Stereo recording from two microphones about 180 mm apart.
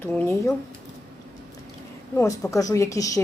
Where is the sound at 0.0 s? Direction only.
15° left (ahead or behind).